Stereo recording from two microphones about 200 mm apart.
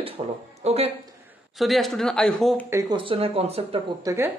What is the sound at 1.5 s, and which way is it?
Speech, centre (ahead or behind).